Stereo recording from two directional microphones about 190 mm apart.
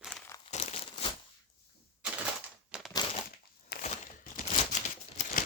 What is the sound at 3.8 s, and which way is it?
Crumpling, 45° left (ahead or behind).